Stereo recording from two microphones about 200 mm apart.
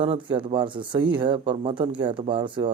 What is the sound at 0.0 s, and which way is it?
Speech, 25° right (ahead or behind).